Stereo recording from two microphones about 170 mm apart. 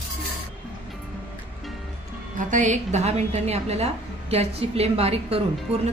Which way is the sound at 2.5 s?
45° right (ahead or behind).